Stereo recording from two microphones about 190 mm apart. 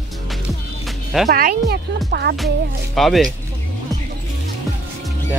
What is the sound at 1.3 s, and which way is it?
Speech, 50° right (ahead or behind).